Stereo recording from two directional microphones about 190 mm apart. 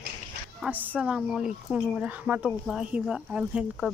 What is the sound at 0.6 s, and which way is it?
Speech, 5° right (ahead or behind).